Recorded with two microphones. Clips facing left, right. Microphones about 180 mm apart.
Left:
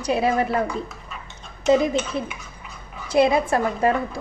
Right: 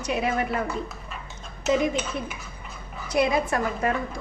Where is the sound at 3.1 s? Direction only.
30° left (ahead or behind).